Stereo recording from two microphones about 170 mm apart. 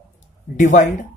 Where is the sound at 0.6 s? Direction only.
50° left (ahead or behind).